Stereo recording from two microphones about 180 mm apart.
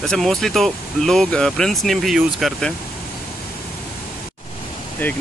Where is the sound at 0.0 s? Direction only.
Centre (ahead or behind).